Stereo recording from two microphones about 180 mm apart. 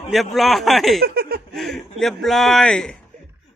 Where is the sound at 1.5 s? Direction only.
Centre (ahead or behind).